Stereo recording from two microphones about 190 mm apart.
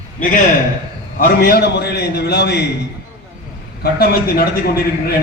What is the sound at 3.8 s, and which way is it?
A man's voice, 55° left (ahead or behind).